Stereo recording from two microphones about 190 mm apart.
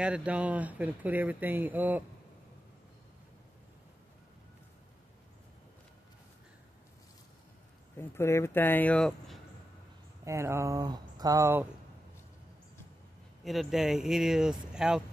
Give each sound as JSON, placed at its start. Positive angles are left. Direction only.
{"t": 0.0, "sound": "speech", "side_deg": -5}
{"t": 8.0, "sound": "speech", "side_deg": 15}
{"t": 10.2, "sound": "speech", "side_deg": -15}
{"t": 13.4, "sound": "speech", "side_deg": 0}